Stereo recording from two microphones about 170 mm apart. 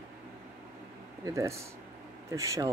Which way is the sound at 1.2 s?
15° right (ahead or behind).